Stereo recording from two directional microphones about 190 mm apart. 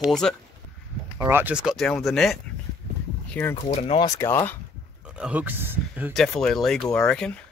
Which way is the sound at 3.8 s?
20° left (ahead or behind).